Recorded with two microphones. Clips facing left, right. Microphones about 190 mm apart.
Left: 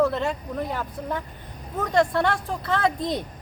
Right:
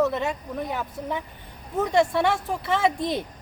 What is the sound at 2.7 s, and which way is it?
Speech, 25° right (ahead or behind).